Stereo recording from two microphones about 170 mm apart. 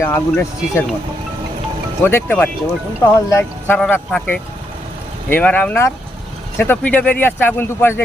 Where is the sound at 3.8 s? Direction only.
5° left (ahead or behind).